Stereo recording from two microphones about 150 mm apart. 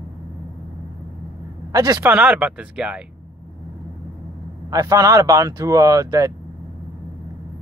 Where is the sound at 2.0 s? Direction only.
10° right (ahead or behind).